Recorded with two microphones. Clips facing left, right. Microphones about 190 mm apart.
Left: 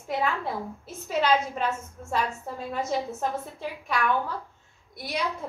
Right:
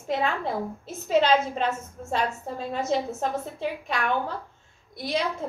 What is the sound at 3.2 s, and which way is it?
A woman's voice, 25° right (ahead or behind).